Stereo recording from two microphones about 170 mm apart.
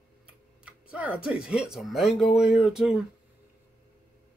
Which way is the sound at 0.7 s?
10° right (ahead or behind).